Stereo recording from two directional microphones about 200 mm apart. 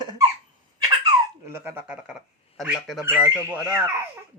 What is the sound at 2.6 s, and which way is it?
Speech, centre (ahead or behind).